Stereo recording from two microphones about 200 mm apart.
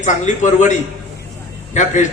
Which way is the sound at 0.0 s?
40° left (ahead or behind).